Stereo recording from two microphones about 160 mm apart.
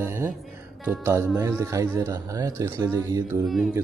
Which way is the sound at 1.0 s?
15° right (ahead or behind).